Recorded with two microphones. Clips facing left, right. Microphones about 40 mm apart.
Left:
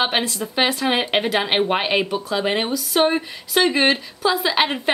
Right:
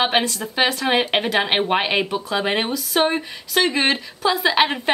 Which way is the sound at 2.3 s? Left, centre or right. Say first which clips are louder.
Even; centre.